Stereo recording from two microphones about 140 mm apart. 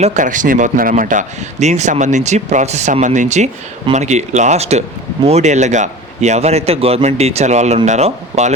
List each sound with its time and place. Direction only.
0.0 s a man's voice: 60° right (ahead or behind)